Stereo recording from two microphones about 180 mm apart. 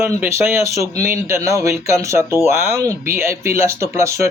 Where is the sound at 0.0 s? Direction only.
15° right (ahead or behind).